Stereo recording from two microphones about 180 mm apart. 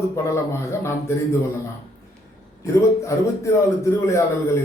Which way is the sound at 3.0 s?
15° left (ahead or behind).